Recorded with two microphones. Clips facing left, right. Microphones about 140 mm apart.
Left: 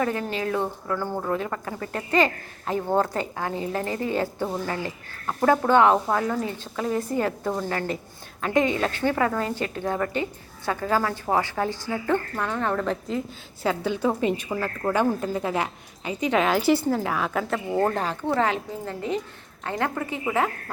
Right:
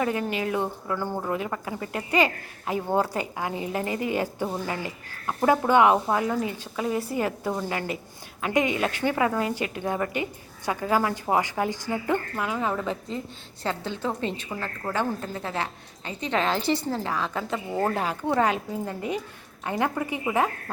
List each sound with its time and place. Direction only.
0.0 s a woman's voice: 20° right (ahead or behind)